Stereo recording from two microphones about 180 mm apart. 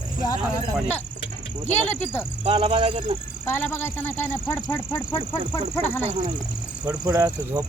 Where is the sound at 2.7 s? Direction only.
35° right (ahead or behind).